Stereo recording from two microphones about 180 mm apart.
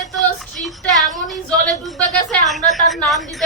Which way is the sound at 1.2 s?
Centre (ahead or behind).